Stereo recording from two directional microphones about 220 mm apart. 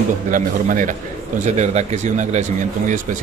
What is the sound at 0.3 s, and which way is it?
A man's voice, 35° right (ahead or behind).